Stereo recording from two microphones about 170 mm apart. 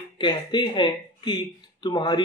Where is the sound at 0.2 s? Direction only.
25° left (ahead or behind).